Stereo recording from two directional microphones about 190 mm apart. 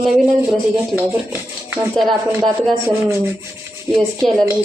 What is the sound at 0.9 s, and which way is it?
Speech, 10° right (ahead or behind).